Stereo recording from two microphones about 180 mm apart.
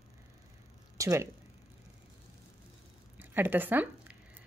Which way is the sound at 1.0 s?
15° right (ahead or behind).